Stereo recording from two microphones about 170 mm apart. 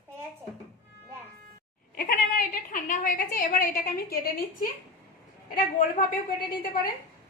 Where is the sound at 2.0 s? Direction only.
55° left (ahead or behind).